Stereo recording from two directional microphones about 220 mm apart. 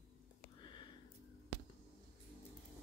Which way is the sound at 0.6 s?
20° left (ahead or behind).